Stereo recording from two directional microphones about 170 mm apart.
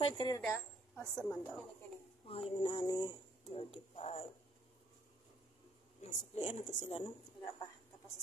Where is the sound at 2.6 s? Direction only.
30° left (ahead or behind).